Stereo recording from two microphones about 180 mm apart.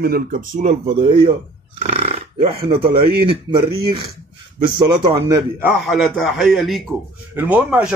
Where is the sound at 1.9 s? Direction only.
35° right (ahead or behind).